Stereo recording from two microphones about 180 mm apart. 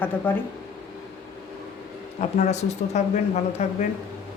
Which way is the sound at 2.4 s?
40° left (ahead or behind).